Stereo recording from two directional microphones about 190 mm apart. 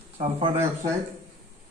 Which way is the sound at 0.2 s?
25° right (ahead or behind).